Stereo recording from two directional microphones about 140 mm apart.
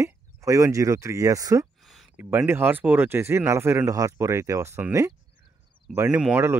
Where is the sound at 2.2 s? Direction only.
15° right (ahead or behind).